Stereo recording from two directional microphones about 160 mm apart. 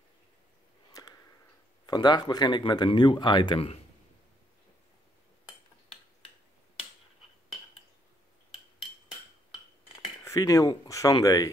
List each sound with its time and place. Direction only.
1.0 s a sound: 25° left (ahead or behind)
1.9 s speech: 25° left (ahead or behind)
10.2 s speech: 20° left (ahead or behind)